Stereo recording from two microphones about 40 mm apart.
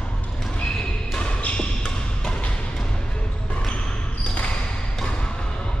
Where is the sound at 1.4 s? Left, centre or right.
Left.